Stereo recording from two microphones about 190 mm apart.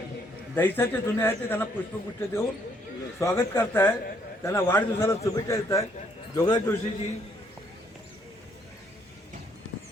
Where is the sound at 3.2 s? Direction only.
15° left (ahead or behind).